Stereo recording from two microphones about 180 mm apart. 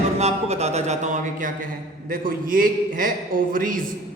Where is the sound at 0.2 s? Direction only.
35° right (ahead or behind).